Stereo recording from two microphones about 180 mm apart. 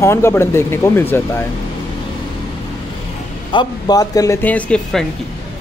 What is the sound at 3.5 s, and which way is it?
Speech, 25° left (ahead or behind).